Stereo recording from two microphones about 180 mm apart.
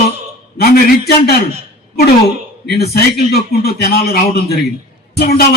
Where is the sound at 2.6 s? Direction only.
60° left (ahead or behind).